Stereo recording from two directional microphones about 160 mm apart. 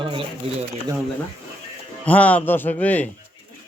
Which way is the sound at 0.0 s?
30° right (ahead or behind).